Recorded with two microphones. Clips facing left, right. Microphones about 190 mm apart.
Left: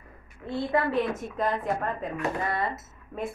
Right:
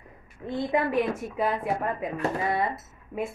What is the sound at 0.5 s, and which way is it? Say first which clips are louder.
A woman's voice: right 1 dB; 15° right (ahead or behind).